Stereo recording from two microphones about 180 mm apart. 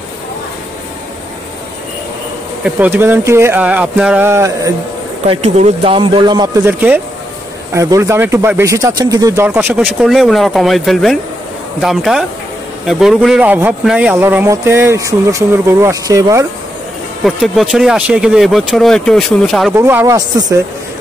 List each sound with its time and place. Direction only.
2.6 s speech: 10° right (ahead or behind)
5.2 s speech: 35° right (ahead or behind)
6.6 s speech: 10° right (ahead or behind)
9.8 s speech: centre (ahead or behind); by 16.4 s 15° right (ahead or behind)
17.2 s speech: centre (ahead or behind)
19.7 s speech: 15° right (ahead or behind)